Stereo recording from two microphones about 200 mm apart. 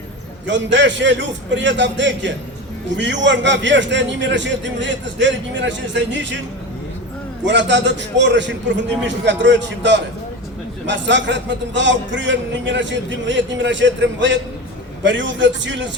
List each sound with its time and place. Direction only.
0.4 s a man's voice: 65° right (ahead or behind)
7.4 s a man's voice: 60° right (ahead or behind)